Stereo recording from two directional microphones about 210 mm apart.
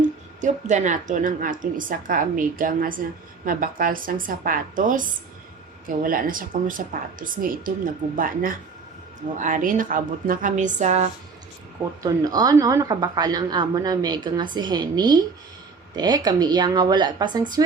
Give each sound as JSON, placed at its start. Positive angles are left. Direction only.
{"t": 0.4, "sound": "a woman's voice", "side_deg": -35}
{"t": 12.0, "sound": "a woman's voice", "side_deg": -20}